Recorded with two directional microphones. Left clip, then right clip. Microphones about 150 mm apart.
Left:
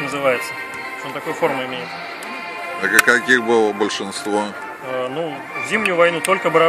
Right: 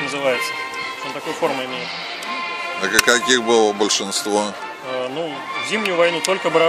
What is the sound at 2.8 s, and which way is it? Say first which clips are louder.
Speech: left 2 dB; 75° right (ahead or behind).